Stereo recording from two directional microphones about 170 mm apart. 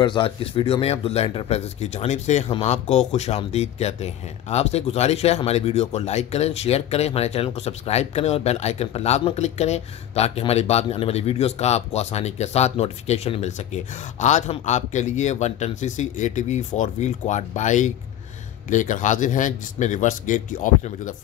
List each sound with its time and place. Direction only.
0.0 s a man's voice: 30° left (ahead or behind); by 21.1 s 50° left (ahead or behind)